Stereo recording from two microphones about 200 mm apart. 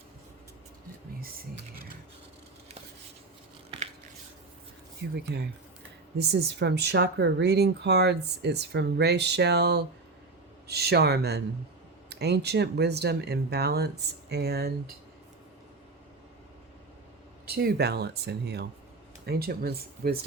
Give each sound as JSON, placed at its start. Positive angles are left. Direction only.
{"t": 5.1, "sound": "speech", "side_deg": -55}
{"t": 17.4, "sound": "speech", "side_deg": -50}